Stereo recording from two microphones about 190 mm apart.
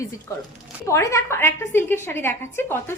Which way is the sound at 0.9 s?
15° left (ahead or behind).